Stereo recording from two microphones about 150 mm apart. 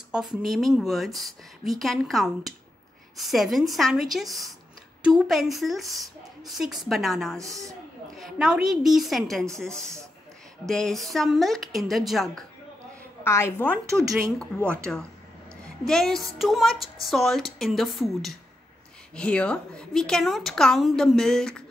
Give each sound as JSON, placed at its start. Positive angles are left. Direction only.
{"t": 0.5, "sound": "speech", "side_deg": 0}
{"t": 7.3, "sound": "speech", "side_deg": -20}
{"t": 8.2, "sound": "speech", "side_deg": -5}
{"t": 13.2, "sound": "a woman's voice", "side_deg": 15}
{"t": 14.6, "sound": "speech", "side_deg": -15}
{"t": 15.8, "sound": "speech", "side_deg": 5}